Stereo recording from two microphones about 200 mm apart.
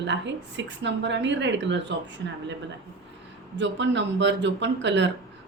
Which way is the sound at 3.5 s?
65° right (ahead or behind).